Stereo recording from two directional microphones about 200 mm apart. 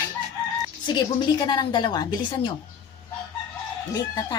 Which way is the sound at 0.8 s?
20° left (ahead or behind).